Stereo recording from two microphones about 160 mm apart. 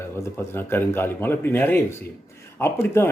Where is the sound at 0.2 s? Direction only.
15° left (ahead or behind).